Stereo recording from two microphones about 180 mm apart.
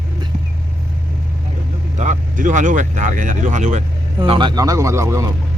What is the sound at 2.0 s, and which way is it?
Speech, 45° right (ahead or behind).